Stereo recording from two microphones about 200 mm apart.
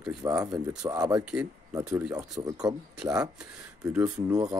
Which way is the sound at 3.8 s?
10° right (ahead or behind).